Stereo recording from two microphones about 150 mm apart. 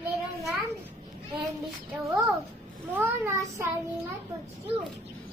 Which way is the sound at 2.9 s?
15° right (ahead or behind).